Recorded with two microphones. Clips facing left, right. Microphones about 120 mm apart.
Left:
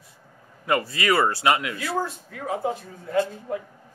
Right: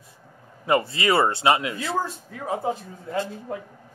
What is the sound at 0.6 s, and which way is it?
Speech, 25° right (ahead or behind).